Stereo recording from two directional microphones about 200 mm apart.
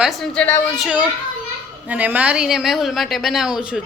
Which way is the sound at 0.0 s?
Centre (ahead or behind).